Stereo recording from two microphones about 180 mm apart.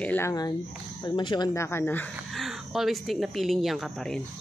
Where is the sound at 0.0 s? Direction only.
10° left (ahead or behind).